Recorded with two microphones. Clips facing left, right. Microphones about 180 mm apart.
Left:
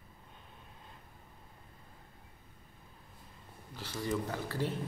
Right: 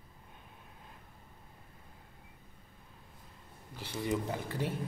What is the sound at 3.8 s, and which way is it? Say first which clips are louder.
Speech: right 1 dB; 15° right (ahead or behind).